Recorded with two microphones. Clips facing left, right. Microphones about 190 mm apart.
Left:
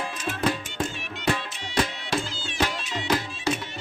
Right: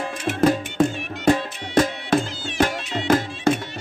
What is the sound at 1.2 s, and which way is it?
Music, 45° right (ahead or behind).